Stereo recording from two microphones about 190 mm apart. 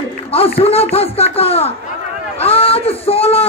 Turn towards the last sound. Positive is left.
turn(degrees=30)  # may be behind; listen again after turning